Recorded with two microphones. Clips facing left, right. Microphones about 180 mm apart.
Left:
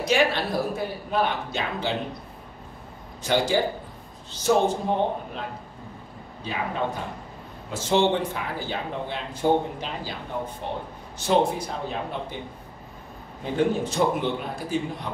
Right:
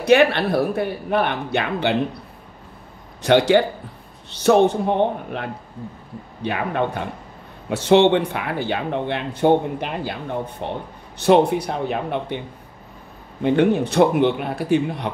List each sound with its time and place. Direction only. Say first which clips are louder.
0.0 s speech: right 7 dB; 65° right (ahead or behind)
3.2 s speech: right 8 dB; 70° right (ahead or behind)
6.4 s speech: right 6 dB; 65° right (ahead or behind)
13.4 s speech: right 7 dB; 70° right (ahead or behind)